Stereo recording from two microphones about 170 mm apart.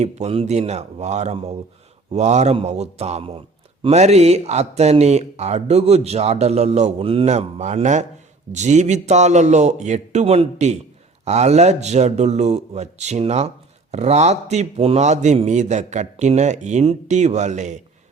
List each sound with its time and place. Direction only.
0.0 s a man's voice: 40° right (ahead or behind)